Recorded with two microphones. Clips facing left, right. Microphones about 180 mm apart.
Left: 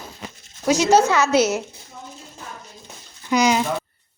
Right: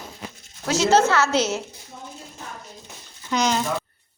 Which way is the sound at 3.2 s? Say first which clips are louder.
Left 4 dB; 10° left (ahead or behind).